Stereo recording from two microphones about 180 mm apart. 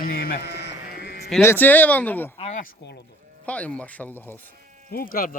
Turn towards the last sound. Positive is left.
turn(degrees=50)  # may be behind; listen again after turning